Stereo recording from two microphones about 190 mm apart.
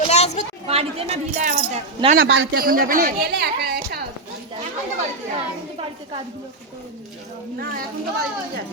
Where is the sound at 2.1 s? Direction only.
65° right (ahead or behind).